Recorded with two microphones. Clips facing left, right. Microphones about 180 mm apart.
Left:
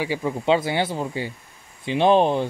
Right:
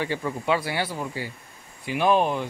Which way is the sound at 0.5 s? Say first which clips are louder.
Left 5 dB; 25° left (ahead or behind).